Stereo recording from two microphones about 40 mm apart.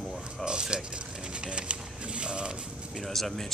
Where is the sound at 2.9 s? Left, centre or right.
Centre.